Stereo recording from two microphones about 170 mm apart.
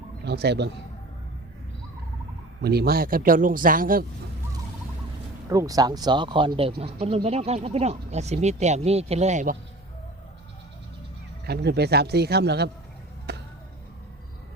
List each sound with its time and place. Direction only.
0.3 s a man's voice: 75° right (ahead or behind)
2.6 s a man's voice: 70° right (ahead or behind); by 4.0 s 55° right (ahead or behind)
5.5 s speech: 20° right (ahead or behind); by 9.6 s 45° right (ahead or behind)
11.4 s a man's voice: 75° right (ahead or behind)
13.3 s music: 75° right (ahead or behind)